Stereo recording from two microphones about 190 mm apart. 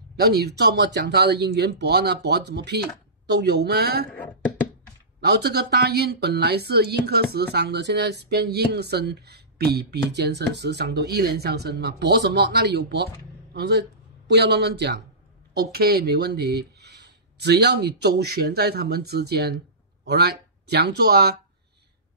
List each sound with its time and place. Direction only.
0.2 s speech: 60° right (ahead or behind)
5.2 s speech: 60° right (ahead or behind)